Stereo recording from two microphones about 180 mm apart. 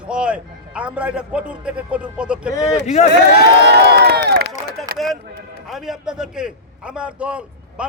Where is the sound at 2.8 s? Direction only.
40° left (ahead or behind).